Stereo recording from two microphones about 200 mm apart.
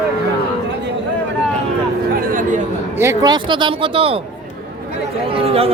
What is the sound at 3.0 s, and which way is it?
Speech, 15° right (ahead or behind).